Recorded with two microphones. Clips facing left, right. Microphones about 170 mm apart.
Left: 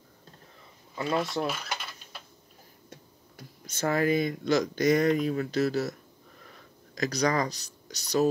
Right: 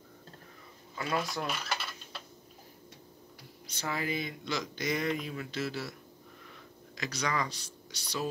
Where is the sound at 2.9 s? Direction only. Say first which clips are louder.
Left 1 dB; 45° left (ahead or behind).